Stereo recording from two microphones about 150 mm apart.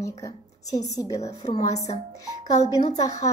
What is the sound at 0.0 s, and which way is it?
A woman's voice, 20° left (ahead or behind).